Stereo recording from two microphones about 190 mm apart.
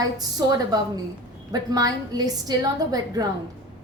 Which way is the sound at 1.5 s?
20° right (ahead or behind).